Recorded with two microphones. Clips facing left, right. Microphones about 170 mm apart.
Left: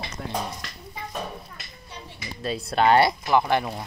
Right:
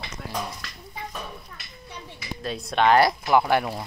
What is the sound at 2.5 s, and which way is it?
Speech, centre (ahead or behind).